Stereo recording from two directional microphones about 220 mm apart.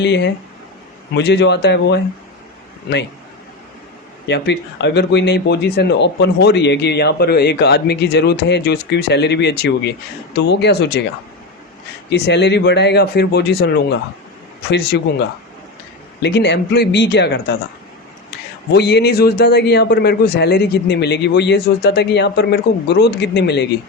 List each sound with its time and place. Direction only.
0.0 s speech: 50° left (ahead or behind)
4.3 s speech: 50° left (ahead or behind)
12.1 s speech: 50° left (ahead or behind)
14.7 s speech: 50° left (ahead or behind)
16.2 s speech: 50° left (ahead or behind)